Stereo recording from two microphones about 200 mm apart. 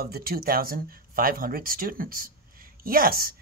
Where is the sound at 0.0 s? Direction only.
50° right (ahead or behind).